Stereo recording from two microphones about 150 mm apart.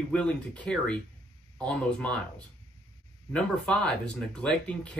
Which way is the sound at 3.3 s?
5° left (ahead or behind).